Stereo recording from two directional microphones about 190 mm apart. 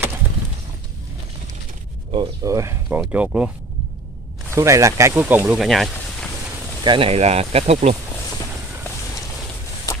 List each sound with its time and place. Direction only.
2.0 s speech: 25° right (ahead or behind)
3.0 s speech: 5° right (ahead or behind)
4.6 s speech: 15° right (ahead or behind)
6.8 s speech: 25° right (ahead or behind)